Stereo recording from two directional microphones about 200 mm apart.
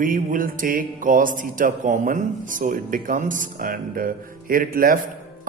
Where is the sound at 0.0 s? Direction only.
45° right (ahead or behind).